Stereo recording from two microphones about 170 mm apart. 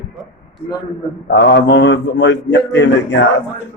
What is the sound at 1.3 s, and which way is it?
A man's voice, 90° left.